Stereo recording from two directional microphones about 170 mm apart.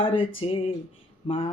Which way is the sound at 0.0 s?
30° left (ahead or behind).